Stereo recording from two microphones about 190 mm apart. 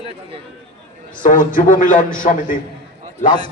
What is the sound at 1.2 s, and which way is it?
A man's voice, 45° left (ahead or behind).